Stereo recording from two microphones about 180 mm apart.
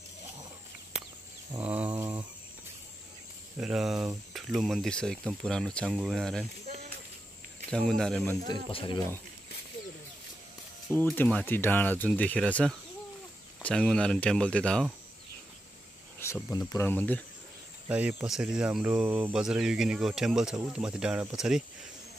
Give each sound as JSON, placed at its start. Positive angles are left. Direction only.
{"t": 1.6, "sound": "a sound", "side_deg": -10}
{"t": 3.5, "sound": "speech", "side_deg": -5}
{"t": 6.6, "sound": "a sound", "side_deg": -35}
{"t": 7.9, "sound": "speech", "side_deg": 0}
{"t": 8.5, "sound": "speech", "side_deg": 25}
{"t": 11.0, "sound": "speech", "side_deg": 10}
{"t": 16.2, "sound": "a sound", "side_deg": 15}
{"t": 16.5, "sound": "speech", "side_deg": 15}
{"t": 17.8, "sound": "speech", "side_deg": -5}